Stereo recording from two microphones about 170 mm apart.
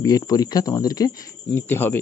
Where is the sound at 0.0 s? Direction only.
20° left (ahead or behind).